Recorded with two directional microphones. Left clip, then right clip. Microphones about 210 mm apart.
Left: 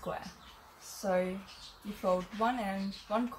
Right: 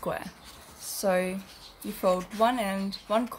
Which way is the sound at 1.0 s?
50° right (ahead or behind).